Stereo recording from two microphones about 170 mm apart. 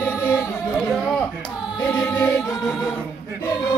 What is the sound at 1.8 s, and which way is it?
Music, 15° left (ahead or behind).